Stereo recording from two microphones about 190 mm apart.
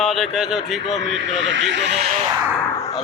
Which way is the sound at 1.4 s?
75° right (ahead or behind).